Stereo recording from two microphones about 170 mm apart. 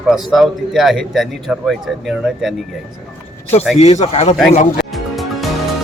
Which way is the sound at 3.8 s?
40° left (ahead or behind).